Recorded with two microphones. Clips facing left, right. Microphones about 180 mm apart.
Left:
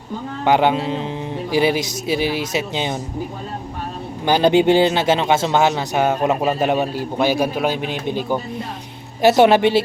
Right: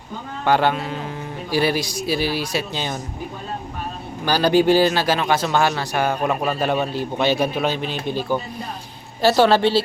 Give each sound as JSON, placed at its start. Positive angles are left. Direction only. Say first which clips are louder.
{"t": 0.4, "sound": "a man's voice", "louder": "left 3 dB", "side_deg": 15}
{"t": 4.3, "sound": "a man's voice", "louder": "left 2 dB", "side_deg": 20}